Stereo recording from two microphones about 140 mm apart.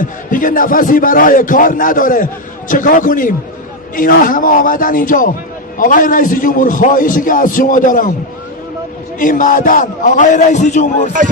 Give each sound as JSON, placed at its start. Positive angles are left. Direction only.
{"t": 0.0, "sound": "a man's voice", "side_deg": 75}
{"t": 9.2, "sound": "a man's voice", "side_deg": 75}